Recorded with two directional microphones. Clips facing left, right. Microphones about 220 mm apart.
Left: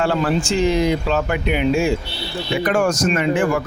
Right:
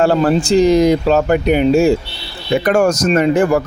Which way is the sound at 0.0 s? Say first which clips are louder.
Right 6 dB; 40° right (ahead or behind).